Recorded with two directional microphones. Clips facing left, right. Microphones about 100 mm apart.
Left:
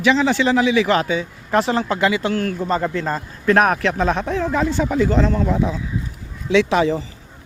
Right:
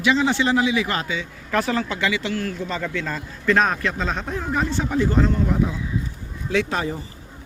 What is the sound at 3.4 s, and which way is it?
Speech, 65° left (ahead or behind).